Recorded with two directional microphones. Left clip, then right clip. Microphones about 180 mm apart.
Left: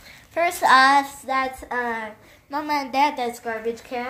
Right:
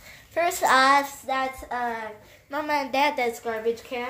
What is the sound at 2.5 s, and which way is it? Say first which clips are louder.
A child's voice: left 1 dB; 5° right (ahead or behind).